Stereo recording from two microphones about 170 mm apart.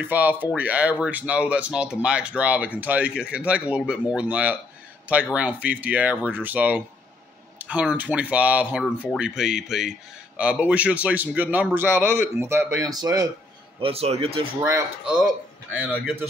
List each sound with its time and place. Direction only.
0.0 s speech: 10° right (ahead or behind)
13.7 s speech: 35° right (ahead or behind)
15.0 s a man's voice: 5° right (ahead or behind)